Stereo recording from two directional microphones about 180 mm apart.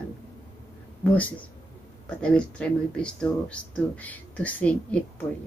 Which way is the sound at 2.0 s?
5° left (ahead or behind).